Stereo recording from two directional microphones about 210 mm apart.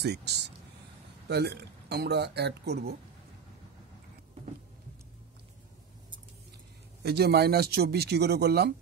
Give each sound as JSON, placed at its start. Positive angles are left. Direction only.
{"t": 0.0, "sound": "speech", "side_deg": -50}
{"t": 7.0, "sound": "speech", "side_deg": -50}